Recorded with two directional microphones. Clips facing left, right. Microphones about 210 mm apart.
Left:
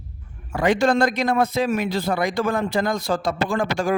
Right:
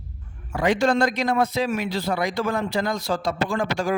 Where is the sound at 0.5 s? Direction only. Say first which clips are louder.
Left 2 dB; 50° left (ahead or behind).